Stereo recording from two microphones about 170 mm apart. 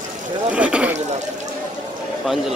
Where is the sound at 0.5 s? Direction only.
5° right (ahead or behind).